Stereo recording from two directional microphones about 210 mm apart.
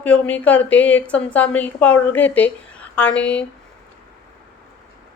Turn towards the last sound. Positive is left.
turn(degrees=5)  # may be behind; listen again after turning